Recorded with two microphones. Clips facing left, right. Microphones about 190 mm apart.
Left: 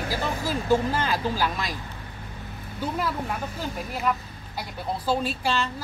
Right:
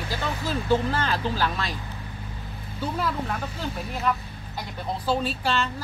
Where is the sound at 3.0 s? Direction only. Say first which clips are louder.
Right 1 dB; 10° left (ahead or behind).